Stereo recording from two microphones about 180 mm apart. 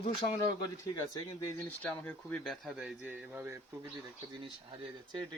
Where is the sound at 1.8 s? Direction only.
10° left (ahead or behind); by 3.6 s 10° right (ahead or behind).